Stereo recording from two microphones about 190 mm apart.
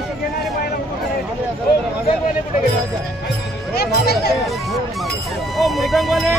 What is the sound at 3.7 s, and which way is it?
Speech, 55° left (ahead or behind).